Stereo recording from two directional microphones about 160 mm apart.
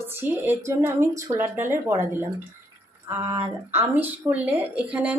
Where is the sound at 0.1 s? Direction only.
15° right (ahead or behind).